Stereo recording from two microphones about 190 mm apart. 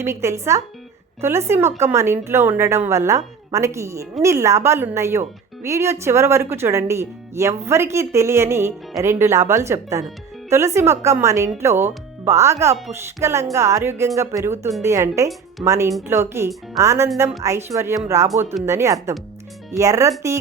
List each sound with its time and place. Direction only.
0.0 s speech: 15° right (ahead or behind)